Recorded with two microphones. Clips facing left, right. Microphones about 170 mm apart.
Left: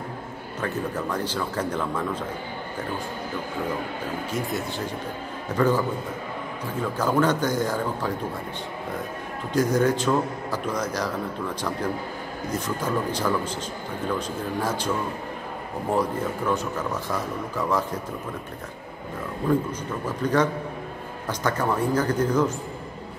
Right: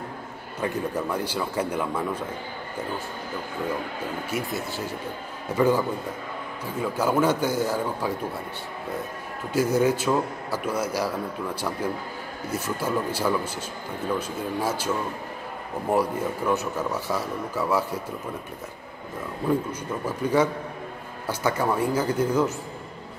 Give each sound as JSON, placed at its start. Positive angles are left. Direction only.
{"t": 0.6, "sound": "a man's voice", "side_deg": -10}
{"t": 4.3, "sound": "a man's voice", "side_deg": -5}
{"t": 9.5, "sound": "a man's voice", "side_deg": -10}
{"t": 15.9, "sound": "a man's voice", "side_deg": -10}
{"t": 20.1, "sound": "a man's voice", "side_deg": -10}